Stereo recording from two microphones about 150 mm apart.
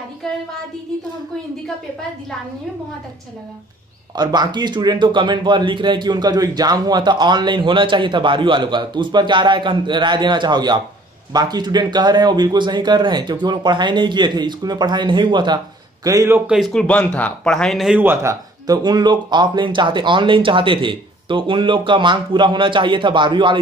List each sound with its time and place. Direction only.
4.1 s speech: 30° right (ahead or behind)
16.4 s speech: centre (ahead or behind)
18.0 s speech: 15° right (ahead or behind); by 23.6 s 30° right (ahead or behind)